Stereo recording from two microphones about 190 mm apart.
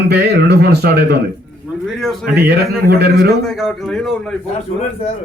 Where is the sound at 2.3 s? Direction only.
55° right (ahead or behind).